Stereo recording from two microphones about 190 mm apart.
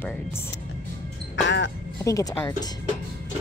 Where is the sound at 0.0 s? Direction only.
10° left (ahead or behind).